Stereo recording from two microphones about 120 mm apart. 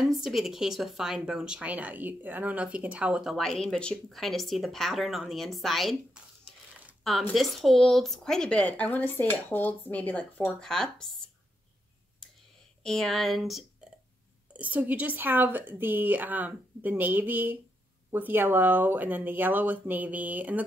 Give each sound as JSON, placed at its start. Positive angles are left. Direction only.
{"t": 0.0, "sound": "speech", "side_deg": 0}
{"t": 12.8, "sound": "speech", "side_deg": 5}
{"t": 14.5, "sound": "speech", "side_deg": -10}